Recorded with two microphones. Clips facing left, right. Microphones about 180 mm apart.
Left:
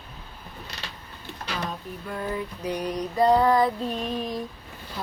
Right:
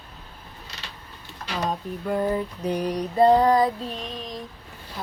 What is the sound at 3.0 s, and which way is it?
Female singing, 30° right (ahead or behind).